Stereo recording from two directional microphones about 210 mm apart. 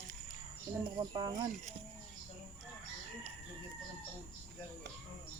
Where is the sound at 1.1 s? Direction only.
20° right (ahead or behind).